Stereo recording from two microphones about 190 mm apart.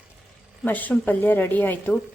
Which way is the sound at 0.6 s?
10° left (ahead or behind).